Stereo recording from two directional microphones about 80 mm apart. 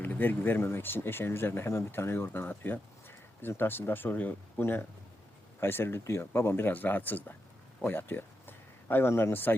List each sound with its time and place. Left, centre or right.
0.0 s speech: left